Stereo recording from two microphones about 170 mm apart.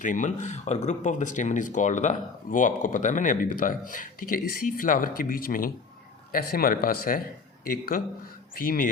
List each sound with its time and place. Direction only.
0.0 s speech: 50° left (ahead or behind)